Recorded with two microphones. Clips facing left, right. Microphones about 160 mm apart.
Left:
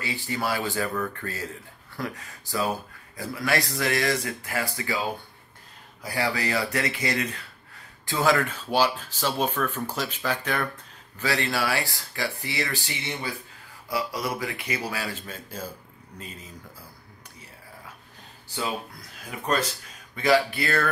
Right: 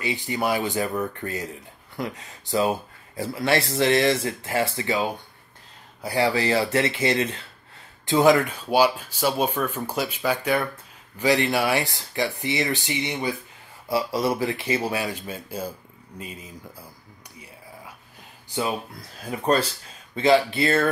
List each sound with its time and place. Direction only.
0.0 s speech: 20° right (ahead or behind)
6.0 s speech: 25° right (ahead or behind)
19.4 s speech: 35° right (ahead or behind)